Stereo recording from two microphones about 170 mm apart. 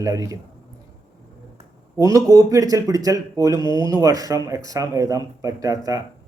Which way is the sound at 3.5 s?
25° left (ahead or behind).